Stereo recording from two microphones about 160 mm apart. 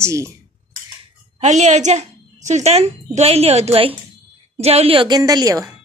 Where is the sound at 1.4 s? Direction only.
45° right (ahead or behind).